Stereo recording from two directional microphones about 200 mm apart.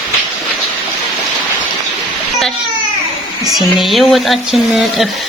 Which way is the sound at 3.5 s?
Centre (ahead or behind).